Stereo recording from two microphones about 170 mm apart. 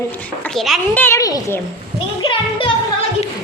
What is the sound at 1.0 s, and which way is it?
Speech, 15° left (ahead or behind).